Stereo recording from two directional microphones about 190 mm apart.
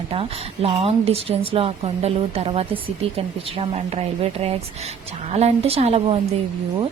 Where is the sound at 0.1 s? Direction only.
30° right (ahead or behind).